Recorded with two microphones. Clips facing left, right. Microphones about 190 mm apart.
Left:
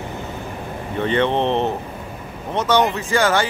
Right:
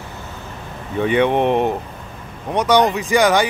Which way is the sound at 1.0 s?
10° right (ahead or behind).